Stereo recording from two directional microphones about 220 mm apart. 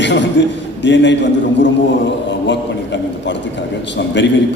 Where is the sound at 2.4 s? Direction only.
55° left (ahead or behind).